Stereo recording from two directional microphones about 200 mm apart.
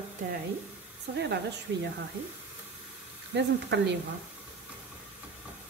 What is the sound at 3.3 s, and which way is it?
Speech, 60° right (ahead or behind).